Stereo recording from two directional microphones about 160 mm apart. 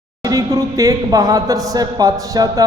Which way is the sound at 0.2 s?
20° right (ahead or behind).